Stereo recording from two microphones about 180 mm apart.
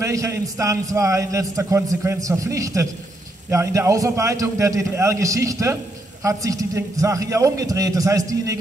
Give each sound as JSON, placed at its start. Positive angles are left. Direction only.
{"t": 0.0, "sound": "a man's voice", "side_deg": -15}